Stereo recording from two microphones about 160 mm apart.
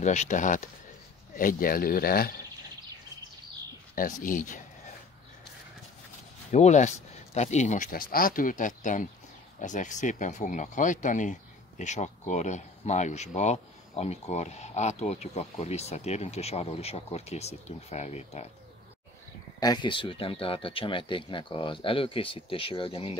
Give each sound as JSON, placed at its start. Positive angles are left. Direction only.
{"t": 0.0, "sound": "speech", "side_deg": 45}
{"t": 3.9, "sound": "speech", "side_deg": 60}
{"t": 6.5, "sound": "speech", "side_deg": 45}
{"t": 19.6, "sound": "speech", "side_deg": 25}